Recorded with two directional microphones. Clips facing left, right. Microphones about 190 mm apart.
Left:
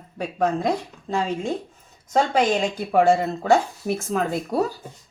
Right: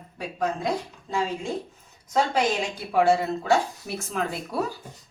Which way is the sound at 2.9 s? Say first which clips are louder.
Left 2 dB; 50° left (ahead or behind).